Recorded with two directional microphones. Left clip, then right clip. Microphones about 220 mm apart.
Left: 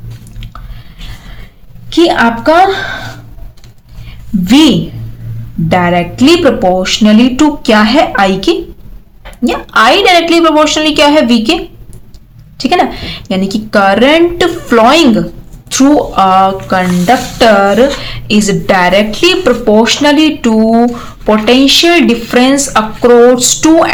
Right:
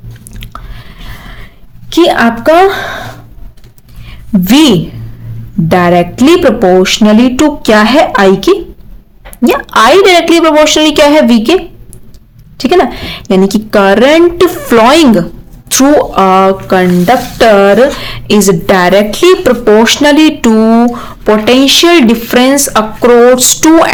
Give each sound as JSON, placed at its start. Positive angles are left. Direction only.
{"t": 1.0, "sound": "dog", "side_deg": -50}
{"t": 1.9, "sound": "speech", "side_deg": -50}
{"t": 4.4, "sound": "speech", "side_deg": -55}
{"t": 12.5, "sound": "speech", "side_deg": -45}